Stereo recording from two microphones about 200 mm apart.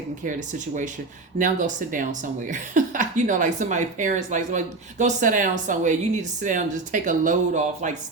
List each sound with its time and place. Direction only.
1.4 s speech: 40° right (ahead or behind)